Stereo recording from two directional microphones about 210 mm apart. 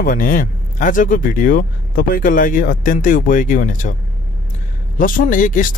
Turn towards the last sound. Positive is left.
turn(degrees=40)  # may be behind; listen again after turning